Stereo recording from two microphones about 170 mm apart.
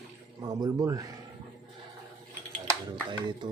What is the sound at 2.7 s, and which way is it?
Speech, 25° right (ahead or behind).